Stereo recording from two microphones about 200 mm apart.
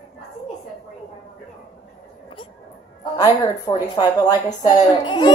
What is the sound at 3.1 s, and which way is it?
A woman's voice, 15° left (ahead or behind).